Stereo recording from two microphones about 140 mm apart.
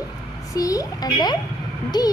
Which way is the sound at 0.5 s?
25° left (ahead or behind).